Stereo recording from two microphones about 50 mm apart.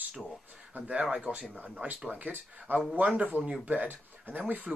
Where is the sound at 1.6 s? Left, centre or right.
Right.